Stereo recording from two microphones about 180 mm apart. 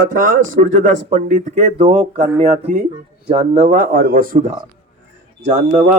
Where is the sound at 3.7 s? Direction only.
60° right (ahead or behind).